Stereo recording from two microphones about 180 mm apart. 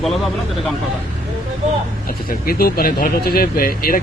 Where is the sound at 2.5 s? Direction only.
55° left (ahead or behind).